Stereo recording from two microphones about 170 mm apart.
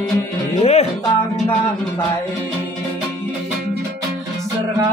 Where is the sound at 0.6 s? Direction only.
40° left (ahead or behind).